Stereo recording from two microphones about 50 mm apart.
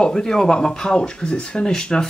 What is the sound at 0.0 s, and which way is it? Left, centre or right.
Speech, centre.